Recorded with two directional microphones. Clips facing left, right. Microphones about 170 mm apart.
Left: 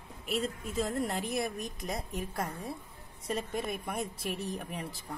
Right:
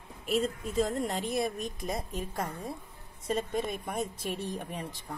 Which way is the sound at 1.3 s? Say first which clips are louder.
Right 3 dB; 25° right (ahead or behind).